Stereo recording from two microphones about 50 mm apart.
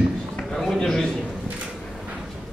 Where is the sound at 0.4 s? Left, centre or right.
Centre.